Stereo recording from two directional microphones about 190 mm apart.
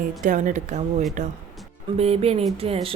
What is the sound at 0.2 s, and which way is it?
A woman's voice, 40° right (ahead or behind).